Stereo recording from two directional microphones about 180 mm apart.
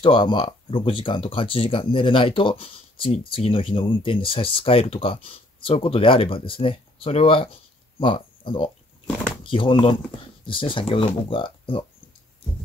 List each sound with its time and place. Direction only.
0.0 s speech: 30° left (ahead or behind)